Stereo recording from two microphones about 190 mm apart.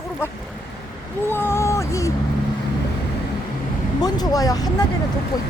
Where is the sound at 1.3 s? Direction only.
10° left (ahead or behind).